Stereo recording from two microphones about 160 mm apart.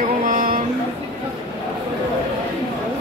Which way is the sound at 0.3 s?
55° right (ahead or behind).